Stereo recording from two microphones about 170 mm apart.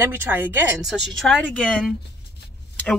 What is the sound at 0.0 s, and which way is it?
Speech, 10° right (ahead or behind).